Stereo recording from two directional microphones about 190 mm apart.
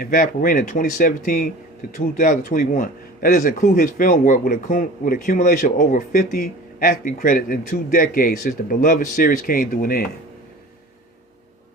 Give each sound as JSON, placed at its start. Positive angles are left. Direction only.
{"t": 0.0, "sound": "a man's voice", "side_deg": 50}